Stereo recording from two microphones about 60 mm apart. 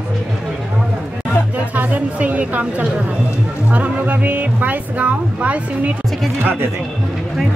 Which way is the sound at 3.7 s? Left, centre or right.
Right.